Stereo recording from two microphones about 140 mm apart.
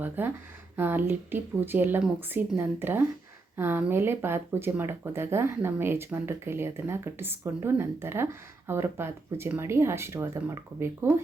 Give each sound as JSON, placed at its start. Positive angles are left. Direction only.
{"t": 0.0, "sound": "speech", "side_deg": -15}